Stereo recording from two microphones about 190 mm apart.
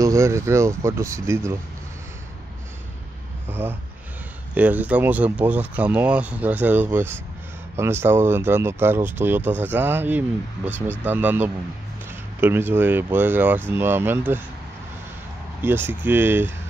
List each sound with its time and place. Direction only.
0.0 s speech: 15° right (ahead or behind)
3.4 s a sound: 10° right (ahead or behind)
4.6 s speech: 10° right (ahead or behind)
15.6 s speech: 10° right (ahead or behind)